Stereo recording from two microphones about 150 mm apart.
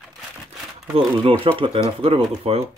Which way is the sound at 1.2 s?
35° right (ahead or behind).